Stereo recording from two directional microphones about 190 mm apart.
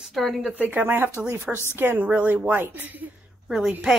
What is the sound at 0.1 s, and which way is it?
A woman's voice, centre (ahead or behind).